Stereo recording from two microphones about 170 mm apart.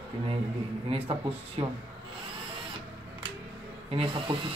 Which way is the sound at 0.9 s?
35° right (ahead or behind).